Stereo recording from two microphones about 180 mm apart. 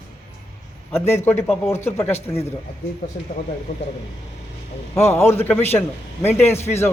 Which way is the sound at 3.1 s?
60° left (ahead or behind).